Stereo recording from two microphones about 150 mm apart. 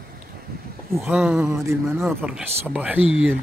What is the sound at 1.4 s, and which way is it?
Speech, 20° right (ahead or behind).